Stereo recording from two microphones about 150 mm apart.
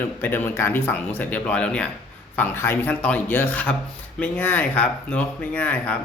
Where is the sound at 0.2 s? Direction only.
15° left (ahead or behind).